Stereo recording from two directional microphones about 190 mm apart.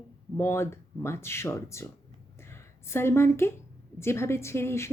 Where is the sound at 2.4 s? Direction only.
15° left (ahead or behind).